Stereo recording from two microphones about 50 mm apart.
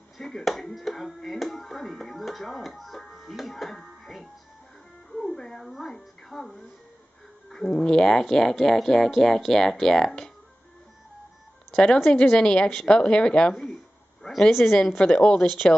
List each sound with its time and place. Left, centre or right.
0.2 s speech: centre
11.7 s a woman's voice: centre